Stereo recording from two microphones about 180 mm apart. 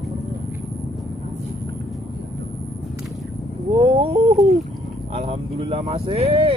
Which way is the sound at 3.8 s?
30° right (ahead or behind).